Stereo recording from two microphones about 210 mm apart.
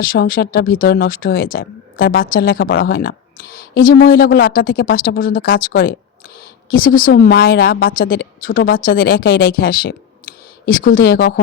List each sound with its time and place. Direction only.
0.0 s speech: 45° left (ahead or behind)
2.8 s a sound: 45° left (ahead or behind)
4.0 s speech: 45° left (ahead or behind)